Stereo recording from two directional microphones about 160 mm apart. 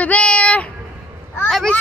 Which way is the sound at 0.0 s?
5° left (ahead or behind).